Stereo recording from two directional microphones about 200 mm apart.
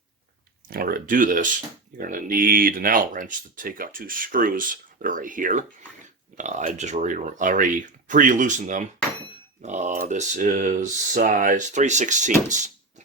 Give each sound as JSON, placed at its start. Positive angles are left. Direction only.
{"t": 0.7, "sound": "speech", "side_deg": -45}